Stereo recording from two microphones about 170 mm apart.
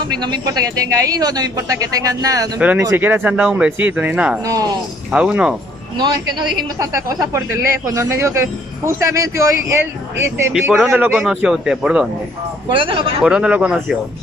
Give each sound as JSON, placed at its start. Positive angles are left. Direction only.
{"t": 0.0, "sound": "speech", "side_deg": -25}
{"t": 2.6, "sound": "speech", "side_deg": -10}
{"t": 4.5, "sound": "speech", "side_deg": -20}
{"t": 5.1, "sound": "a man's voice", "side_deg": -5}
{"t": 5.9, "sound": "speech", "side_deg": -25}
{"t": 10.7, "sound": "a man's voice", "side_deg": -5}
{"t": 12.6, "sound": "speech", "side_deg": -30}
{"t": 13.2, "sound": "a man's voice", "side_deg": -5}